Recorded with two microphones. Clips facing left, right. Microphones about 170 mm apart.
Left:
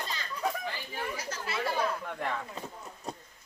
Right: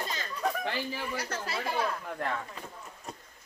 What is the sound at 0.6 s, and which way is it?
Chatter, 75° right (ahead or behind).